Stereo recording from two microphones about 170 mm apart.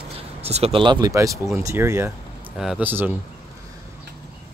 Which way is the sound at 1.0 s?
20° right (ahead or behind).